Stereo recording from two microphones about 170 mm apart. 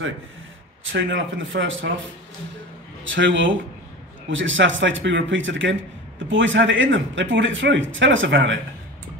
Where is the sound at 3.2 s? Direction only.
90° right.